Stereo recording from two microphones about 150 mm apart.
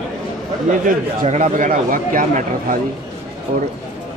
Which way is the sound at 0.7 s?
55° right (ahead or behind).